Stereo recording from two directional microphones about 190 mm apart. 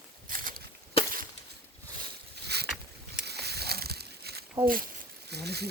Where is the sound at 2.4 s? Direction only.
60° right (ahead or behind).